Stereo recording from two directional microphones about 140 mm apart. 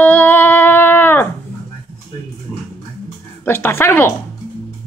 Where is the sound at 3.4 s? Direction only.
15° left (ahead or behind).